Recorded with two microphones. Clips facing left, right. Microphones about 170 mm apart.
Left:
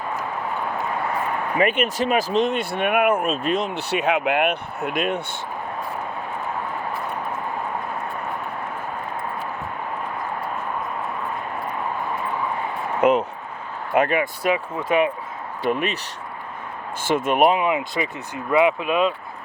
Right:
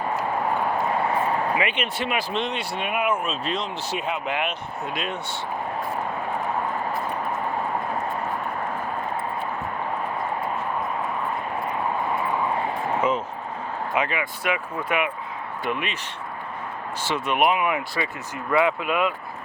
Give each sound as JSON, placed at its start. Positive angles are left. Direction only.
{"t": 1.5, "sound": "speech", "side_deg": 45}
{"t": 13.0, "sound": "speech", "side_deg": 65}
{"t": 13.9, "sound": "speech", "side_deg": 50}
{"t": 14.5, "sound": "speech", "side_deg": 30}
{"t": 17.0, "sound": "speech", "side_deg": 50}
{"t": 17.6, "sound": "speech", "side_deg": 20}